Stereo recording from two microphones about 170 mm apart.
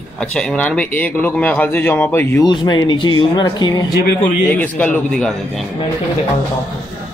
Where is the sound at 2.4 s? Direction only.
25° left (ahead or behind).